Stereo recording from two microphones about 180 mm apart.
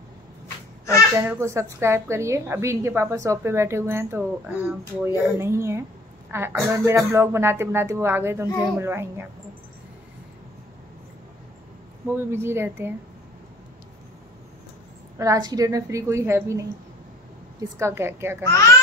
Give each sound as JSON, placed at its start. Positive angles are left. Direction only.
{"t": 1.1, "sound": "speech", "side_deg": -15}
{"t": 12.3, "sound": "speech", "side_deg": -15}
{"t": 15.1, "sound": "speech", "side_deg": -20}
{"t": 17.7, "sound": "speech", "side_deg": -15}